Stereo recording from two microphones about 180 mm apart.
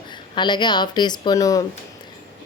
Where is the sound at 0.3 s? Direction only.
25° left (ahead or behind).